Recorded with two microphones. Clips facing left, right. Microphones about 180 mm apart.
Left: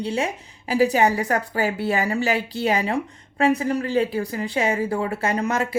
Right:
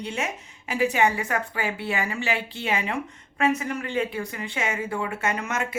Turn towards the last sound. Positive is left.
turn(degrees=35)  # may be behind; listen again after turning